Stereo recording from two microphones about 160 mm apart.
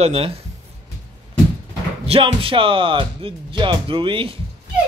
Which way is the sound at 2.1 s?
35° right (ahead or behind).